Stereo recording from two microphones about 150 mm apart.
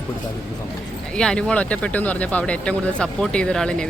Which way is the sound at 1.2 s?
5° left (ahead or behind).